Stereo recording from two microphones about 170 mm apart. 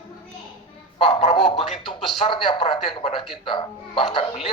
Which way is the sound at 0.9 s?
30° left (ahead or behind).